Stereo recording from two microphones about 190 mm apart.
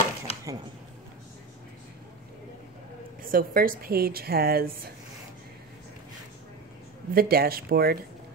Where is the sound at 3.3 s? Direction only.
50° right (ahead or behind).